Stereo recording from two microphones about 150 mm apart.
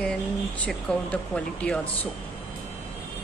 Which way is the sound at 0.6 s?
10° left (ahead or behind).